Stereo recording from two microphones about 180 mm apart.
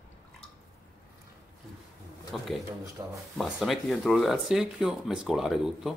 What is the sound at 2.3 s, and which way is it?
Speech, centre (ahead or behind).